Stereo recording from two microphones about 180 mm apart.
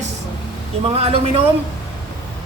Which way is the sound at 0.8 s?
30° right (ahead or behind).